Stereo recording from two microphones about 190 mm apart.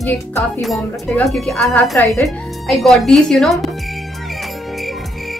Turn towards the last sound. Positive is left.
turn(degrees=0)  # may be behind; listen again after turning